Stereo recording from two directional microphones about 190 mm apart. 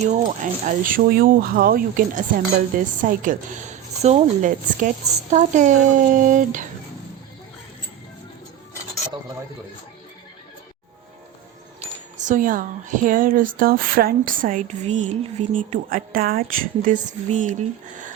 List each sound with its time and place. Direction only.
0.0 s speech: 40° right (ahead or behind)
12.2 s speech: 45° right (ahead or behind)